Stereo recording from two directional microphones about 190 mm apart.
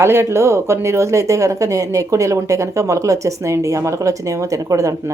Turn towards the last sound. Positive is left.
turn(degrees=-15)  # may be behind; listen again after turning